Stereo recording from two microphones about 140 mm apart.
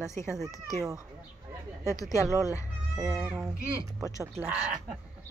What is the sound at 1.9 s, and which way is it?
Speech, 20° left (ahead or behind).